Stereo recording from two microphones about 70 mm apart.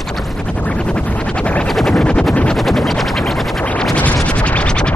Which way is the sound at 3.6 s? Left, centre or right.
Centre.